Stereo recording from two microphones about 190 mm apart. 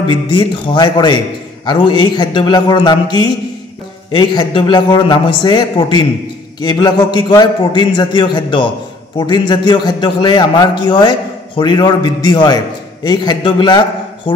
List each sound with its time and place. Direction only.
0.1 s a man's voice: 25° left (ahead or behind)